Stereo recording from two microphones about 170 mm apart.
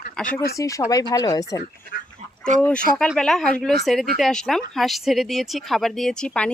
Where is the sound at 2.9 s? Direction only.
5° left (ahead or behind).